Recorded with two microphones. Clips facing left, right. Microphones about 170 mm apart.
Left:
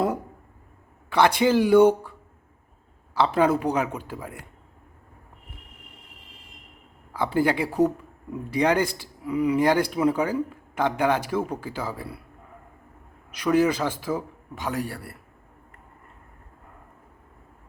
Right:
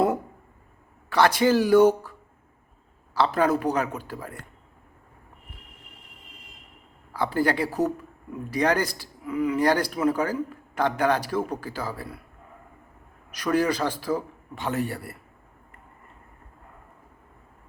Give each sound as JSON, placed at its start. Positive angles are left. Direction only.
{"t": 1.2, "sound": "speech", "side_deg": 15}
{"t": 3.2, "sound": "speech", "side_deg": 15}
{"t": 7.1, "sound": "speech", "side_deg": 15}
{"t": 13.4, "sound": "speech", "side_deg": 10}
{"t": 14.8, "sound": "a man's voice", "side_deg": -5}